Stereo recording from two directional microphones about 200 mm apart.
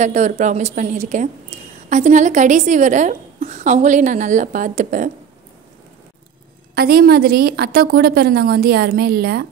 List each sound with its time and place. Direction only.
0.0 s a woman's voice: 35° right (ahead or behind)
6.7 s a woman's voice: 50° right (ahead or behind)